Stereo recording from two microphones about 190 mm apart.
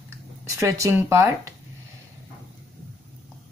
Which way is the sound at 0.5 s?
15° right (ahead or behind).